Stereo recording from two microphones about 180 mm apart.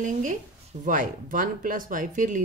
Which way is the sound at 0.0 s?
45° right (ahead or behind).